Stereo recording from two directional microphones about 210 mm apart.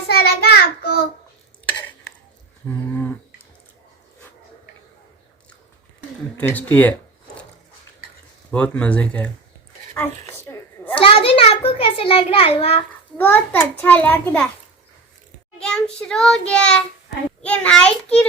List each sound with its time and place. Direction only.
0.1 s child singing: 50° left (ahead or behind)
2.6 s a sound: 10° left (ahead or behind)
6.3 s a child's voice: 10° left (ahead or behind)
8.4 s a child's voice: 5° left (ahead or behind)
9.9 s a sound: 10° left (ahead or behind)
11.0 s a sound: 25° left (ahead or behind)
13.1 s a child's voice: 10° left (ahead or behind)
15.5 s child singing: 5° left (ahead or behind)
17.4 s a child's voice: 5° left (ahead or behind)